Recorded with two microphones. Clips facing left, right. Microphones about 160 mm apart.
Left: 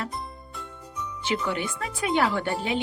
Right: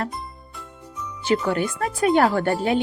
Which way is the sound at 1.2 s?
40° right (ahead or behind).